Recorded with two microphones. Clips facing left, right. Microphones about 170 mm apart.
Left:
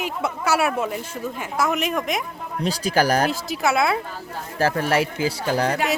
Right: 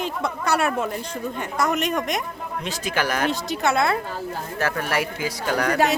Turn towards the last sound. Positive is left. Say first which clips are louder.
# left 2 dB
turn(degrees=30)  # may be behind; listen again after turning